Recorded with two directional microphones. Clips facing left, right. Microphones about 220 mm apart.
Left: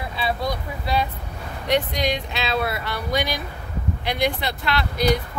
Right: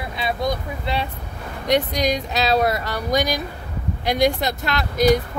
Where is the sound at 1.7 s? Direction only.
40° right (ahead or behind).